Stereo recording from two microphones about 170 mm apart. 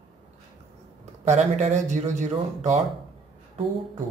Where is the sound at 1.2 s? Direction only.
40° right (ahead or behind).